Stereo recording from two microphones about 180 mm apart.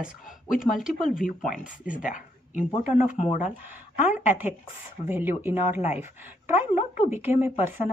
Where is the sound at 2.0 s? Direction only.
45° left (ahead or behind).